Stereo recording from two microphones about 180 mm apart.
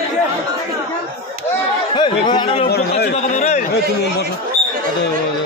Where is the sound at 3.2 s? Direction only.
40° left (ahead or behind).